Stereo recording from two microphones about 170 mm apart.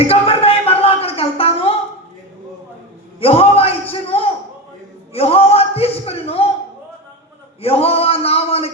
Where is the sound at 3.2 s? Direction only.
35° left (ahead or behind).